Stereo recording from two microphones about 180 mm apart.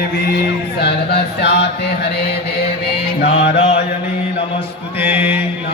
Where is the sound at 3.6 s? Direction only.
30° left (ahead or behind).